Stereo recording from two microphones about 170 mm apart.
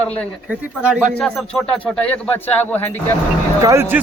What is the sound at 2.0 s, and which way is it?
Speech, 10° left (ahead or behind).